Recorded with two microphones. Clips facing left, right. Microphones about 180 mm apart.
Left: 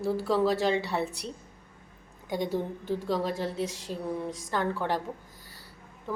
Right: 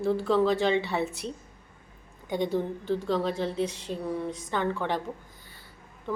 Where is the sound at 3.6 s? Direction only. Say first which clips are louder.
Right 3 dB; 45° left (ahead or behind).